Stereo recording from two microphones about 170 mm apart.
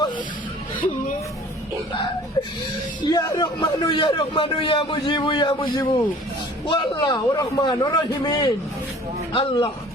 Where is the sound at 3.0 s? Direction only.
25° left (ahead or behind).